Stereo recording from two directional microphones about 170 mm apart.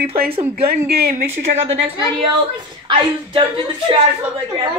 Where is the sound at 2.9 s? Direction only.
30° right (ahead or behind).